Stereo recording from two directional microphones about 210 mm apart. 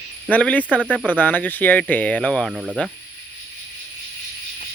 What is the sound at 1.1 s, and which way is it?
Speech, 10° left (ahead or behind).